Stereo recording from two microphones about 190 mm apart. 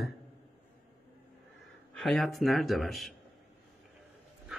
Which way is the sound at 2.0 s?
Centre (ahead or behind).